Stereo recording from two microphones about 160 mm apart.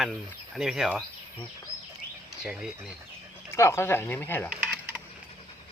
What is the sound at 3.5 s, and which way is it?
Speech, 15° left (ahead or behind).